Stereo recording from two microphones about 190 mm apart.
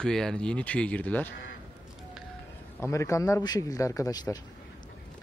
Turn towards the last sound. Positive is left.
turn(degrees=20)  # may be behind; listen again after turning